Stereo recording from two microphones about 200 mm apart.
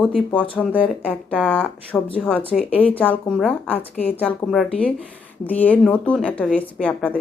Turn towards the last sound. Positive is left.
turn(degrees=5)  # may be behind; listen again after turning